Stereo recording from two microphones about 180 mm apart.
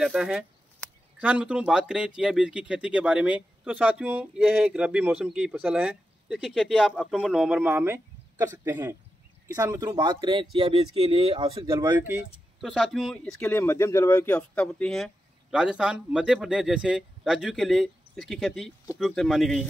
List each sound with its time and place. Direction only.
0.0 s speech: 5° right (ahead or behind); by 11.5 s 30° right (ahead or behind)
11.5 s speech: 15° right (ahead or behind); by 19.7 s centre (ahead or behind)